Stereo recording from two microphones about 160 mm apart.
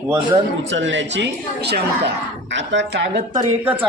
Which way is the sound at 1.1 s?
90° right.